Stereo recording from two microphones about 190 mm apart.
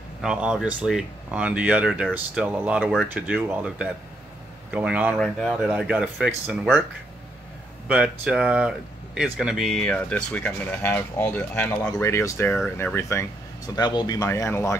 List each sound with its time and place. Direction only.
0.2 s speech: 5° right (ahead or behind)
5.1 s speech: 5° left (ahead or behind)
7.9 s speech: 5° right (ahead or behind); by 14.8 s 15° left (ahead or behind)